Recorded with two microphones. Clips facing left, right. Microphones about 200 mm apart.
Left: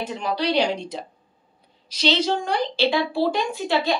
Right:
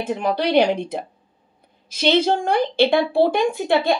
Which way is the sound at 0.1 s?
55° right (ahead or behind).